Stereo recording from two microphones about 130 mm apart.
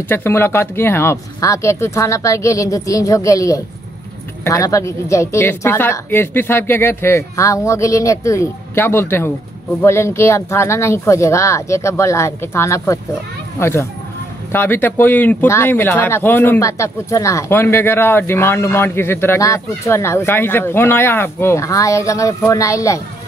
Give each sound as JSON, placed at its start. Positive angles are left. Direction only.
{"t": 0.1, "sound": "speech", "side_deg": 20}